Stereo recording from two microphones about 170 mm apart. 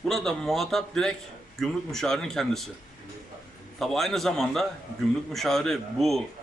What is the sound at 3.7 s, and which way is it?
Speech, centre (ahead or behind).